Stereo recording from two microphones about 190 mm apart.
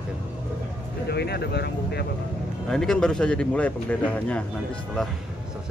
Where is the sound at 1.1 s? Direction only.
60° left (ahead or behind).